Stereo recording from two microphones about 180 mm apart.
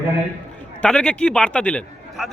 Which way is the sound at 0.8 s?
5° left (ahead or behind).